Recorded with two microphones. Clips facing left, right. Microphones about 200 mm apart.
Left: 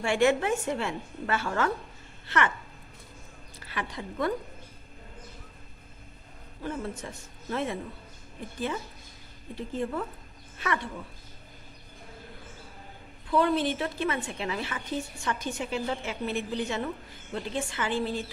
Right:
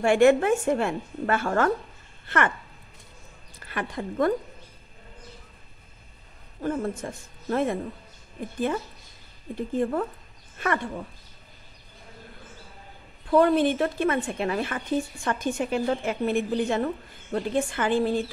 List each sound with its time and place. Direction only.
0.0 s a woman's voice: 50° right (ahead or behind)
3.5 s a woman's voice: 50° right (ahead or behind)
6.6 s a woman's voice: 50° right (ahead or behind)
9.6 s a woman's voice: 50° right (ahead or behind)
13.3 s a woman's voice: 50° right (ahead or behind)